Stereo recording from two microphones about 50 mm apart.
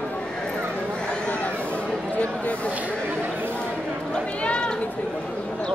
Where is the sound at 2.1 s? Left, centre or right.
Left.